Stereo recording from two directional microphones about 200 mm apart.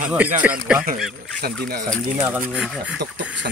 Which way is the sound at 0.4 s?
5° right (ahead or behind).